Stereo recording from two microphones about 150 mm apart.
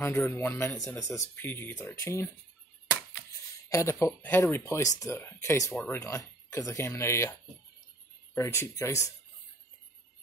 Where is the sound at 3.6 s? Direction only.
20° left (ahead or behind).